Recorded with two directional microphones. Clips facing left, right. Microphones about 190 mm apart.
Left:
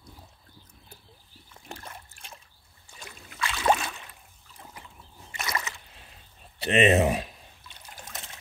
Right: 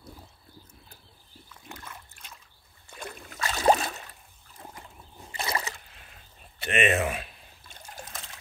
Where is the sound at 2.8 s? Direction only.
60° right (ahead or behind).